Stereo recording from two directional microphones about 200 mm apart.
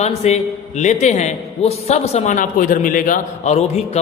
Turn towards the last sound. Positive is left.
turn(degrees=35)  # may be behind; listen again after turning